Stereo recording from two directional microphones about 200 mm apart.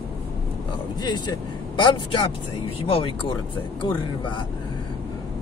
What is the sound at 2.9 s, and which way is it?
Speech, 25° left (ahead or behind).